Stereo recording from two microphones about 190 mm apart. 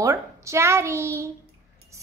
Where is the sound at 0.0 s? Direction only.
15° right (ahead or behind).